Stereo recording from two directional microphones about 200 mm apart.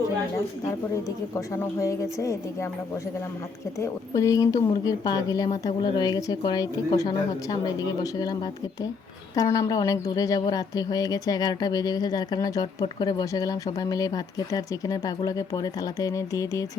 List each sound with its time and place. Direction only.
1.4 s speech: 15° left (ahead or behind)
3.8 s a woman's voice: 15° left (ahead or behind)